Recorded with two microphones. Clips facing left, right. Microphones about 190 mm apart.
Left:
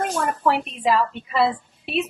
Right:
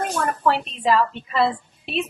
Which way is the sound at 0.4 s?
10° left (ahead or behind).